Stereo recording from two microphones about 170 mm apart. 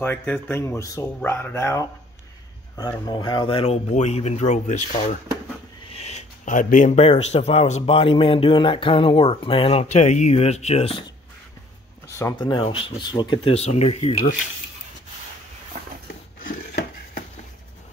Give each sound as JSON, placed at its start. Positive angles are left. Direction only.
{"t": 0.0, "sound": "speech", "side_deg": 10}
{"t": 3.1, "sound": "speech", "side_deg": 25}
{"t": 12.2, "sound": "speech", "side_deg": 20}